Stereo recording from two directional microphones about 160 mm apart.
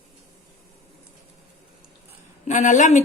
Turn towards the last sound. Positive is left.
turn(degrees=50)  # may be behind; listen again after turning